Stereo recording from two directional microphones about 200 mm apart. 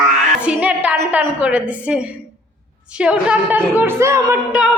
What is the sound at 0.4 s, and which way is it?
A woman's voice, 5° right (ahead or behind).